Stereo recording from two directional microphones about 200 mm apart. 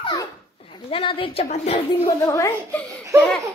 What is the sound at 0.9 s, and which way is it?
Speech, 25° left (ahead or behind).